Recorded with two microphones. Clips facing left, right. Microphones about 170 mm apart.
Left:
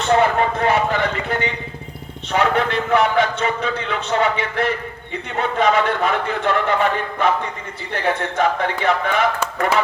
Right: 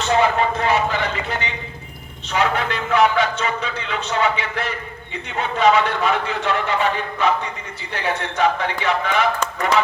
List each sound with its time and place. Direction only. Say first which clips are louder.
0.0 s a man's voice: left 1 dB; 55° left (ahead or behind)